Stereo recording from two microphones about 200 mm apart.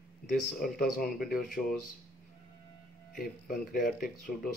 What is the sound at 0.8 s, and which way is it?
Speech, 45° left (ahead or behind).